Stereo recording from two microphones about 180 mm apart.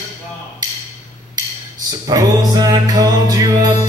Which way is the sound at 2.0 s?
20° right (ahead or behind).